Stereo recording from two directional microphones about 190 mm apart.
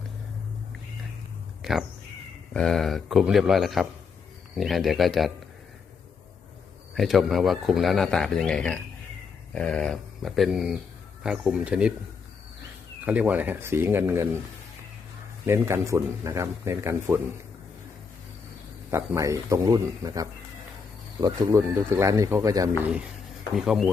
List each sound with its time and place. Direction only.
1.6 s crow: 5° right (ahead or behind)
2.5 s a man's voice: 5° left (ahead or behind)
6.9 s a man's voice: centre (ahead or behind)
13.1 s a man's voice: 10° right (ahead or behind)
15.4 s a man's voice: 15° right (ahead or behind)
18.9 s a man's voice: 15° right (ahead or behind)
22.8 s a man's voice: 5° right (ahead or behind)